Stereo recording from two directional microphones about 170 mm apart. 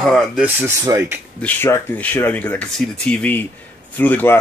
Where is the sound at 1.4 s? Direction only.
10° left (ahead or behind).